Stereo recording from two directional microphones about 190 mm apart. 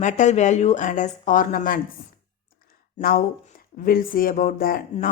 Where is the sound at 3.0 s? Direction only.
50° left (ahead or behind).